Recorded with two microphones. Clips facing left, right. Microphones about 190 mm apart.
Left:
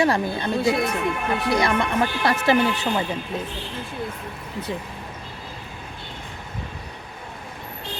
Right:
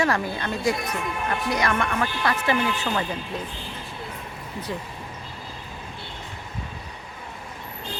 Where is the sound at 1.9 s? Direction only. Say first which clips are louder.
Left 3 dB; 35° left (ahead or behind).